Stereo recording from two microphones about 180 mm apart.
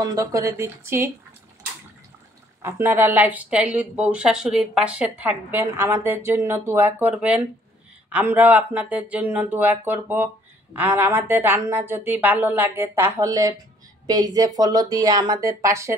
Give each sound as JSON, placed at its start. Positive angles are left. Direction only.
{"t": 0.0, "sound": "speech", "side_deg": -20}
{"t": 2.6, "sound": "speech", "side_deg": -10}